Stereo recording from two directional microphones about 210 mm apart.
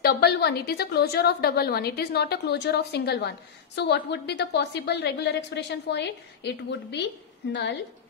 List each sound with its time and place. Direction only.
0.0 s a woman's voice: 50° left (ahead or behind)